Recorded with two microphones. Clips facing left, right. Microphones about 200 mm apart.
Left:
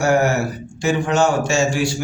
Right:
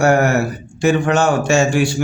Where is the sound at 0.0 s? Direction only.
60° right (ahead or behind).